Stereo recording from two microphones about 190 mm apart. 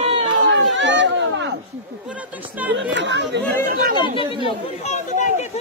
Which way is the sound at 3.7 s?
50° right (ahead or behind).